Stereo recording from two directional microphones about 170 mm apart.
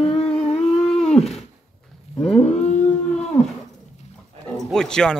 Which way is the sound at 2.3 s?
40° left (ahead or behind).